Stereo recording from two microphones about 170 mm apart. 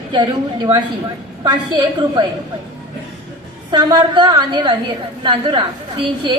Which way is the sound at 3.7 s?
25° right (ahead or behind).